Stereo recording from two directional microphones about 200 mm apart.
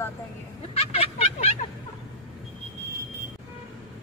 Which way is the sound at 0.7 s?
30° left (ahead or behind).